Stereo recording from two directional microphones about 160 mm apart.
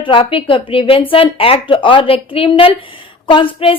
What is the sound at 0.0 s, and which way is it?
A woman's voice, 35° left (ahead or behind).